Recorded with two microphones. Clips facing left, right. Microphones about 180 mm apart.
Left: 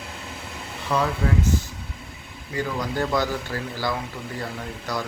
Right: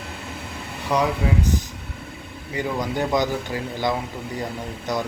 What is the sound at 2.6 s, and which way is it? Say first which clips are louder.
Speech: right 1 dB; 20° right (ahead or behind).